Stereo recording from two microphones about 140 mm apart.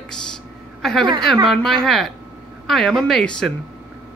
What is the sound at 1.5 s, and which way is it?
Speech, centre (ahead or behind).